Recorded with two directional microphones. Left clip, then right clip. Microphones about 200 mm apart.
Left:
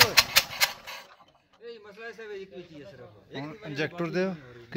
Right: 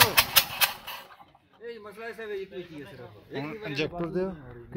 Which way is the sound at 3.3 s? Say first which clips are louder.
Right 3 dB; 45° left (ahead or behind).